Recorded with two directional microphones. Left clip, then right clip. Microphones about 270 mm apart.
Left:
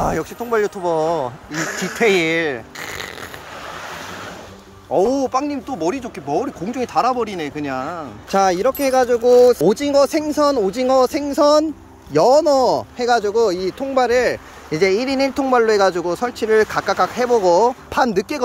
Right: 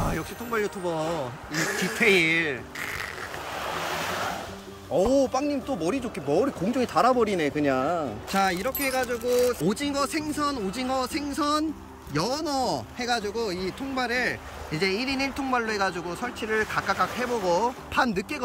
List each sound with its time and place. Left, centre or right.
0.0 s speech: centre
1.5 s speech: centre
2.0 s speech: centre
4.9 s speech: centre
8.3 s speech: centre